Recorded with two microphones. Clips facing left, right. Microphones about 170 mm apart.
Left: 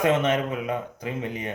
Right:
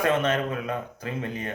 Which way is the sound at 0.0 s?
20° left (ahead or behind).